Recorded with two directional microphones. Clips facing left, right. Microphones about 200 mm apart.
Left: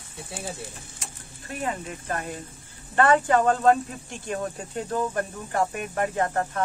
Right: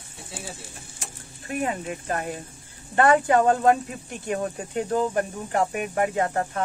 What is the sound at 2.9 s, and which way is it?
Speech, 20° right (ahead or behind).